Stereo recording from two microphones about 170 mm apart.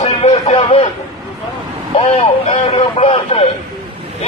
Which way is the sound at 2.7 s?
35° left (ahead or behind).